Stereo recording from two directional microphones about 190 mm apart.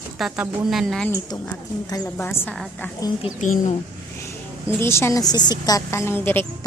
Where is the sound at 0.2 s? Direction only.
5° right (ahead or behind).